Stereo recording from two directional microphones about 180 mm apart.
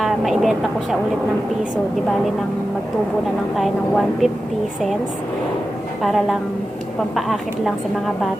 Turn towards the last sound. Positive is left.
turn(degrees=0)  # may be behind; listen again after turning